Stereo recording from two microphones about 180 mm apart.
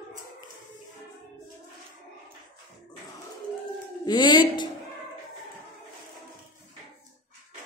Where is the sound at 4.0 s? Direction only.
25° left (ahead or behind).